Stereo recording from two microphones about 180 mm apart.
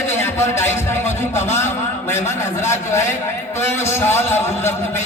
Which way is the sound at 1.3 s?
40° left (ahead or behind).